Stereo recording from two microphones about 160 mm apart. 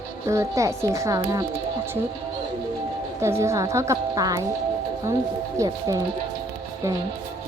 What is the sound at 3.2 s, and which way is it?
A woman's voice, 15° right (ahead or behind).